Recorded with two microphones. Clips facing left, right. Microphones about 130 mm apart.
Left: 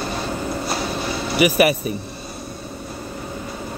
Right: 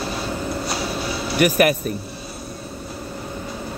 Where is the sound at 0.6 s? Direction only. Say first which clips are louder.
Left 1 dB; 5° right (ahead or behind).